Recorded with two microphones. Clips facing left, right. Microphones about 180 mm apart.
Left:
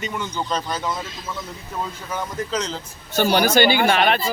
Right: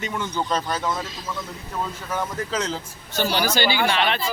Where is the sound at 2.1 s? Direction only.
5° right (ahead or behind).